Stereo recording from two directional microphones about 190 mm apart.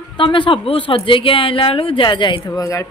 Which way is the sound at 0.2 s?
25° left (ahead or behind).